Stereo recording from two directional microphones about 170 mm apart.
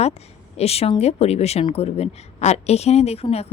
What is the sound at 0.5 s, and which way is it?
Speech, 35° left (ahead or behind).